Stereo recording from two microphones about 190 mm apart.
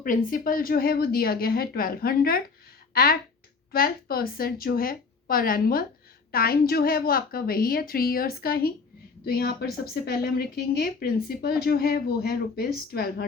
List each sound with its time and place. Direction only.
0.0 s a woman's voice: 45° left (ahead or behind)